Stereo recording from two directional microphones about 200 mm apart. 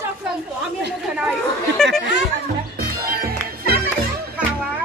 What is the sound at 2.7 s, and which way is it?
Music, 45° right (ahead or behind).